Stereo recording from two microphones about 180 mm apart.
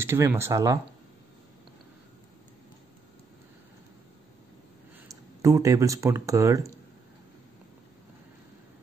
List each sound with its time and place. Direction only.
0.0 s speech: 15° right (ahead or behind)
5.0 s speech: 20° right (ahead or behind)